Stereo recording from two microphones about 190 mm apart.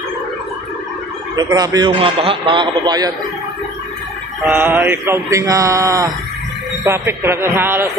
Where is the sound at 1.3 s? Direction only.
20° right (ahead or behind).